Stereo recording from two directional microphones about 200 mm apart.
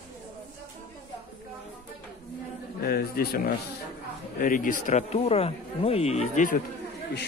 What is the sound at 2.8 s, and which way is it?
Speech, 50° left (ahead or behind).